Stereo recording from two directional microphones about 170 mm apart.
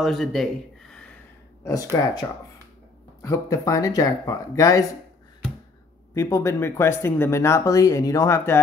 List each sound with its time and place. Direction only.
0.0 s speech: centre (ahead or behind)
1.6 s speech: 20° left (ahead or behind)
6.1 s speech: 15° left (ahead or behind)